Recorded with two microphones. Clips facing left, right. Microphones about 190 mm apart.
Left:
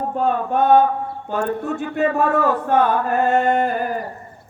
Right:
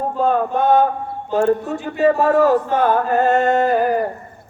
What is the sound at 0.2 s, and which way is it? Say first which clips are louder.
Speech: right 1 dB; 60° left (ahead or behind).